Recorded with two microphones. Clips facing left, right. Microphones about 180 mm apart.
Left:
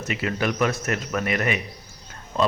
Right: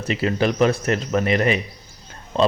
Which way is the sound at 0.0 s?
30° right (ahead or behind).